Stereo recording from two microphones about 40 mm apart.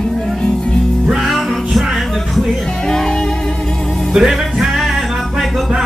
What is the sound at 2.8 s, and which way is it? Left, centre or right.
Music, centre.